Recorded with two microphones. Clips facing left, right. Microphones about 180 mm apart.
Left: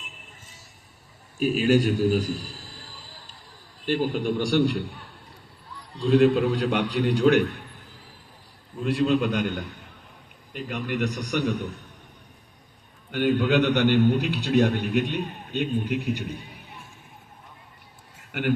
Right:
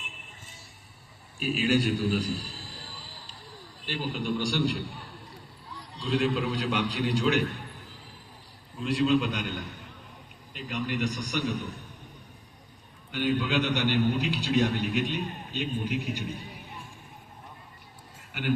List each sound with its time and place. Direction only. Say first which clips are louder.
1.4 s a man's voice: left 5 dB; 45° left (ahead or behind)
3.8 s a man's voice: left 7 dB; 50° left (ahead or behind)
6.0 s a man's voice: left 9 dB; 50° left (ahead or behind)
8.8 s a man's voice: left 2 dB; 50° left (ahead or behind)
13.1 s a man's voice: left 6 dB; 55° left (ahead or behind)